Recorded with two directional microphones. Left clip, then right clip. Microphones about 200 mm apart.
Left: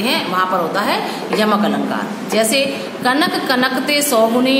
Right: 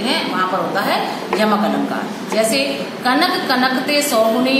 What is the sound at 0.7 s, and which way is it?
A woman's voice, 50° left (ahead or behind).